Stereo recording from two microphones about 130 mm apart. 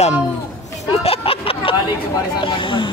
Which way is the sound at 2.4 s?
40° left (ahead or behind).